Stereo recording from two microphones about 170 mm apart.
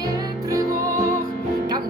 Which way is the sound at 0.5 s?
20° right (ahead or behind).